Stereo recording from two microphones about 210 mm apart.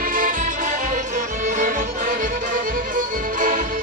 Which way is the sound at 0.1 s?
40° right (ahead or behind).